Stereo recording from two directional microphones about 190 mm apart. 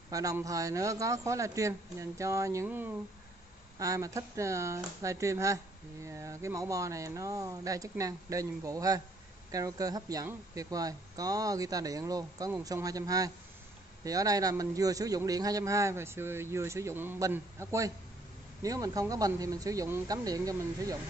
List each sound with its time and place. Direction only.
0.1 s a man's voice: 15° right (ahead or behind)